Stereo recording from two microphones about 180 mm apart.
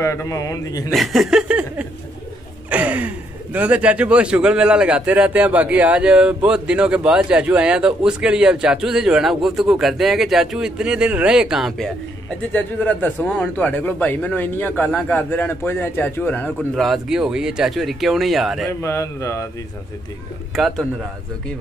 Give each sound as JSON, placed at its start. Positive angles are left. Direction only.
{"t": 0.0, "sound": "a man's voice", "side_deg": 15}
{"t": 0.9, "sound": "a man's voice", "side_deg": 0}
{"t": 18.7, "sound": "a man's voice", "side_deg": 15}
{"t": 20.5, "sound": "speech", "side_deg": 0}